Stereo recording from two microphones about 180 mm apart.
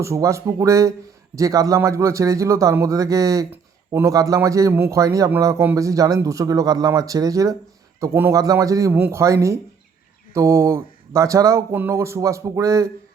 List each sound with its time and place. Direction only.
0.0 s a man's voice: 15° right (ahead or behind)